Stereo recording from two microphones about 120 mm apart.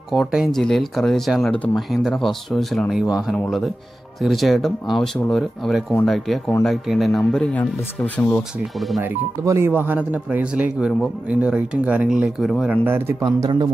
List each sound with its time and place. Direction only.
0.2 s speech: centre (ahead or behind)
8.0 s speech: 15° left (ahead or behind)
8.7 s speech: centre (ahead or behind)
9.4 s speech: 25° right (ahead or behind); by 12.7 s 5° right (ahead or behind)
12.8 s speech: 20° right (ahead or behind)
13.2 s a man's voice: 35° right (ahead or behind)